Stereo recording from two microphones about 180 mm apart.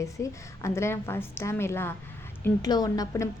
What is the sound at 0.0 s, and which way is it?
A woman's voice, 15° left (ahead or behind).